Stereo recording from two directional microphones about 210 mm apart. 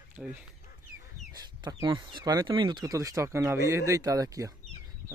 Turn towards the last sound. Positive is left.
turn(degrees=-15)  # may be behind; listen again after turning